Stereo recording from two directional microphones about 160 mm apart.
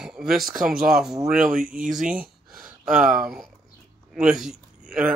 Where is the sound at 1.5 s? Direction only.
55° right (ahead or behind).